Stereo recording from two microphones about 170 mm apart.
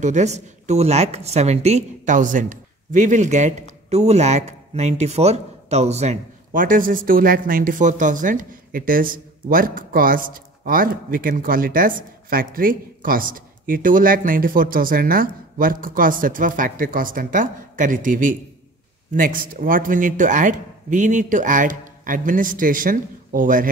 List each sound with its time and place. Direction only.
0.0 s speech: 45° right (ahead or behind)